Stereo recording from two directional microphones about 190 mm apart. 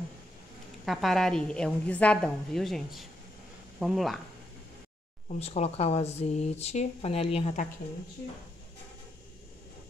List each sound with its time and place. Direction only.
0.8 s a woman's voice: centre (ahead or behind)
5.4 s speech: 35° left (ahead or behind)